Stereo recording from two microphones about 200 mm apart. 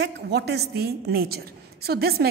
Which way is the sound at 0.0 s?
55° right (ahead or behind).